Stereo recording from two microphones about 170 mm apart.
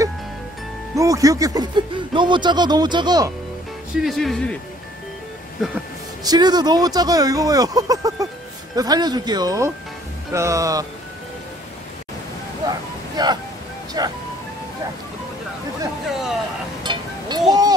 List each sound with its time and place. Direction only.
0.9 s speech: 20° right (ahead or behind)
4.0 s speech: centre (ahead or behind)
6.2 s speech: 25° right (ahead or behind)
12.6 s a sound: 25° right (ahead or behind)
14.0 s speech: 25° right (ahead or behind)
16.8 s a sound: 25° right (ahead or behind)